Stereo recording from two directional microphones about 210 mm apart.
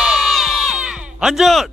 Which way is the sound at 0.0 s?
Centre (ahead or behind).